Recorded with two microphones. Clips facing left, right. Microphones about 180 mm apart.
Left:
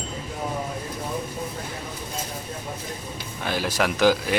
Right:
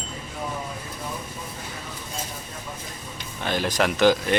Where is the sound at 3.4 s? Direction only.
5° left (ahead or behind).